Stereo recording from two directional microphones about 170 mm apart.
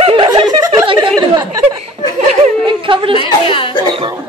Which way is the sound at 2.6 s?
30° right (ahead or behind).